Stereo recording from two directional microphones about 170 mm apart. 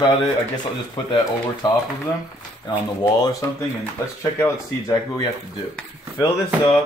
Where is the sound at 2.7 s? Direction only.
25° left (ahead or behind).